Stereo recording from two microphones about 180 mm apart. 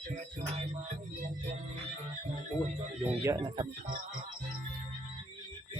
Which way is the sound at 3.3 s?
25° right (ahead or behind).